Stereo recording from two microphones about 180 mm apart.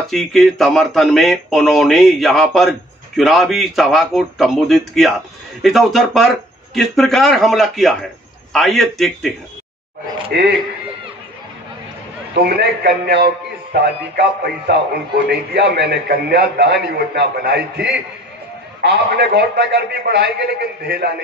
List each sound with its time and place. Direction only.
0.1 s speech: centre (ahead or behind)
12.4 s a man's voice: 65° right (ahead or behind)